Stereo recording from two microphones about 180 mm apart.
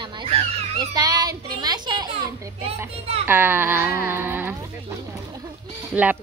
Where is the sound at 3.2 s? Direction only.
10° right (ahead or behind).